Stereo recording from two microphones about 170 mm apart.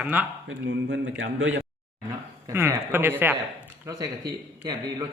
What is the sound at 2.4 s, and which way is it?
A man's voice, 15° right (ahead or behind).